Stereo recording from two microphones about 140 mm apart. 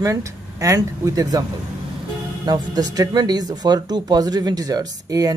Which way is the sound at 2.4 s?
30° right (ahead or behind).